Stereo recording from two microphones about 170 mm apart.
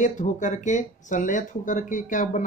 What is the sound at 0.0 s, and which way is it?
Speech, 45° left (ahead or behind).